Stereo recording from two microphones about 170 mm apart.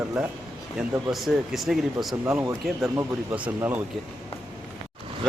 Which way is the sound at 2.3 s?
15° right (ahead or behind).